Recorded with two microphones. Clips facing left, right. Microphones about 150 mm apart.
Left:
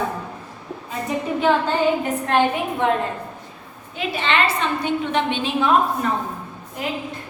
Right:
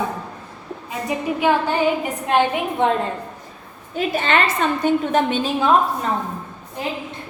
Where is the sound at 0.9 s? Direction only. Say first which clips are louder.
Right 1 dB; 10° right (ahead or behind).